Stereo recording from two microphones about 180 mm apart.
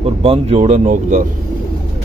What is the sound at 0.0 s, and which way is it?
Speech, 30° right (ahead or behind).